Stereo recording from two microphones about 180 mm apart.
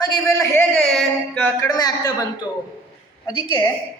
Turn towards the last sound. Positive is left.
turn(degrees=25)  # may be behind; listen again after turning